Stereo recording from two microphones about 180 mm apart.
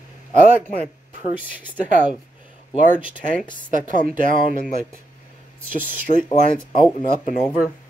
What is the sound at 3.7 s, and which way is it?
Speech, 50° right (ahead or behind).